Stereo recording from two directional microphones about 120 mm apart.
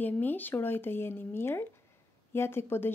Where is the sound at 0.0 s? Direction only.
15° left (ahead or behind).